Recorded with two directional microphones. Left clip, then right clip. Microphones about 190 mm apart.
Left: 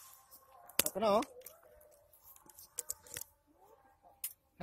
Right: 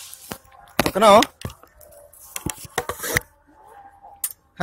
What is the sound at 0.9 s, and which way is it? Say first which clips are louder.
Speech: right 19 dB; 25° right (ahead or behind).